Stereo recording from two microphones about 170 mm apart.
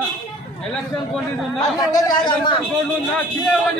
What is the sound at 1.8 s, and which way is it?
Speech, 20° left (ahead or behind).